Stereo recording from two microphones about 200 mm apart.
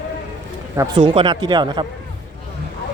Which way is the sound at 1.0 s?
25° right (ahead or behind).